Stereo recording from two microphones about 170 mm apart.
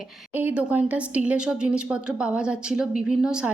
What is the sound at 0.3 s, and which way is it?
A woman's voice, 10° right (ahead or behind).